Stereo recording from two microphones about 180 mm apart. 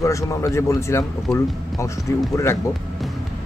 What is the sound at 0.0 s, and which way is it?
Speech, 15° left (ahead or behind).